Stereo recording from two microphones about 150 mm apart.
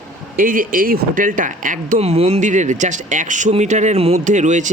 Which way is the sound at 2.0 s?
45° right (ahead or behind).